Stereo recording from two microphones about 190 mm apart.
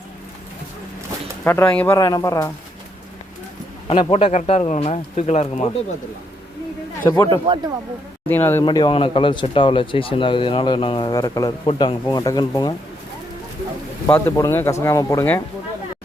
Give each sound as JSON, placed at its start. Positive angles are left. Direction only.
{"t": 1.5, "sound": "speech", "side_deg": 10}
{"t": 3.8, "sound": "speech", "side_deg": 30}
{"t": 7.0, "sound": "a man's voice", "side_deg": 15}
{"t": 7.3, "sound": "speech", "side_deg": -25}
{"t": 8.3, "sound": "speech", "side_deg": 10}
{"t": 8.6, "sound": "speech", "side_deg": 25}
{"t": 12.0, "sound": "speech", "side_deg": 20}
{"t": 14.1, "sound": "speech", "side_deg": 15}